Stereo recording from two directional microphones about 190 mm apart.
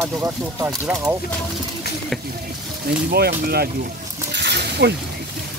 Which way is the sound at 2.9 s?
55° right (ahead or behind).